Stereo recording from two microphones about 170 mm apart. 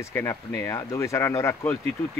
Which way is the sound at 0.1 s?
15° left (ahead or behind).